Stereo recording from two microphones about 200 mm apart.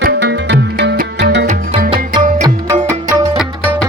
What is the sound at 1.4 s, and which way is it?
Music, 35° right (ahead or behind).